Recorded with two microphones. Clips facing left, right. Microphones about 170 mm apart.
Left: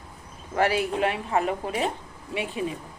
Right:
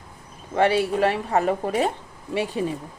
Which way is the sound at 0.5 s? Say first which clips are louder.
Right 4 dB; 30° right (ahead or behind).